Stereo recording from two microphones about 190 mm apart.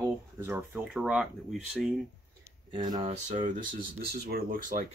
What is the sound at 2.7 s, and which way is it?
Speech, 25° right (ahead or behind).